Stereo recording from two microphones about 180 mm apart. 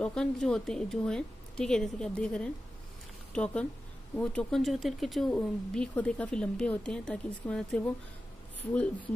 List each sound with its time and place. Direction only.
0.0 s speech: 5° left (ahead or behind)